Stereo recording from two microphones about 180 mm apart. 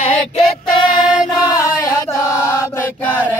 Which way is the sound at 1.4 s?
20° left (ahead or behind).